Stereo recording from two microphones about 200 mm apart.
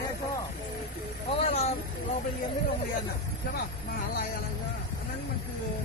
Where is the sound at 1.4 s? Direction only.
30° left (ahead or behind).